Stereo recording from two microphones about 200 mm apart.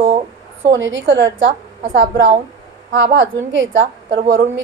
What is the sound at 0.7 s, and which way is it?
A woman's voice, 70° right (ahead or behind).